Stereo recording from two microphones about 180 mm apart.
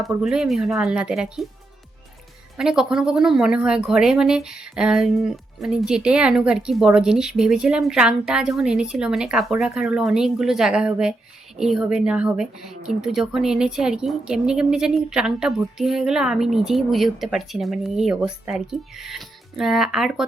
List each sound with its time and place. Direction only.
0.0 s speech: 5° right (ahead or behind)
2.6 s speech: 5° right (ahead or behind)